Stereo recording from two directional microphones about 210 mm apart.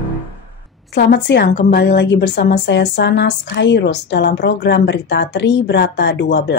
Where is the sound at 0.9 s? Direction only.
55° left (ahead or behind).